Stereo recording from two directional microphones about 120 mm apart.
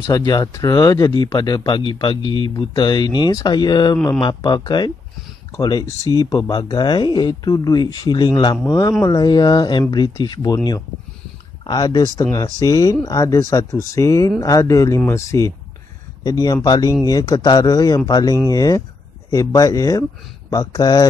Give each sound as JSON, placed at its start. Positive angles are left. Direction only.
{"t": 0.1, "sound": "speech", "side_deg": 35}